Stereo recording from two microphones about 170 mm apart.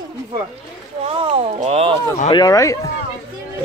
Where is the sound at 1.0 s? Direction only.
35° right (ahead or behind).